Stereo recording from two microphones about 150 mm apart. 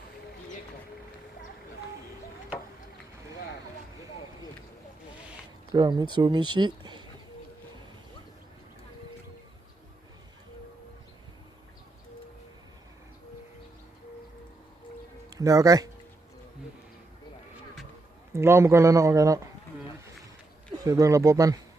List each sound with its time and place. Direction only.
5.7 s speech: 30° right (ahead or behind)
15.4 s speech: 20° right (ahead or behind)
18.3 s speech: 15° right (ahead or behind)
20.8 s speech: 20° right (ahead or behind)